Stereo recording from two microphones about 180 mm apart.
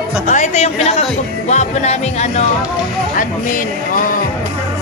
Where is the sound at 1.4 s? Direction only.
40° left (ahead or behind).